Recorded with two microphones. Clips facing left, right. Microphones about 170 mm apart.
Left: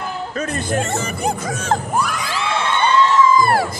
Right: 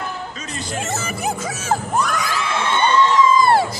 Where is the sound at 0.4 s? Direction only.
55° left (ahead or behind).